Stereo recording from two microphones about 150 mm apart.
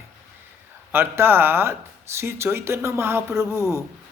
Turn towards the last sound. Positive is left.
turn(degrees=-20)  # may be behind; listen again after turning